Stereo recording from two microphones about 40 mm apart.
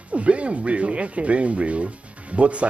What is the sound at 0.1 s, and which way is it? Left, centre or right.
A man's voice, right.